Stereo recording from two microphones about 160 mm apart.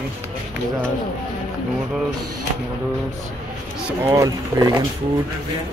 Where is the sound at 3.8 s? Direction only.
15° right (ahead or behind).